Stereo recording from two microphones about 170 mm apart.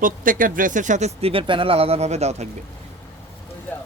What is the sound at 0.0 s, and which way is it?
Speech, 55° right (ahead or behind).